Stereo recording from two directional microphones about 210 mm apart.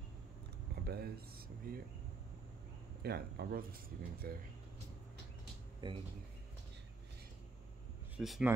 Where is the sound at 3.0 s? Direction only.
50° right (ahead or behind).